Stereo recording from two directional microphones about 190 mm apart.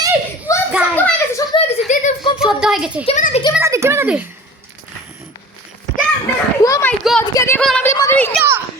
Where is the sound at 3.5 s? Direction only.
15° right (ahead or behind).